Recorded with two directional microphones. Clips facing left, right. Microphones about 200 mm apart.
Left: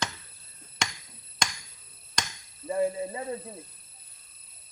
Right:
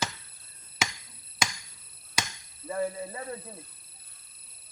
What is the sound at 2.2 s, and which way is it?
Chop, 5° right (ahead or behind).